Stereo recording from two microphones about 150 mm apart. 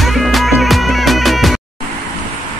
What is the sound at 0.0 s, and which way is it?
Music, centre (ahead or behind).